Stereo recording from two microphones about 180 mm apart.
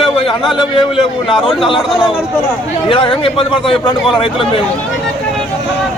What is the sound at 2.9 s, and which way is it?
A man's voice, 30° left (ahead or behind).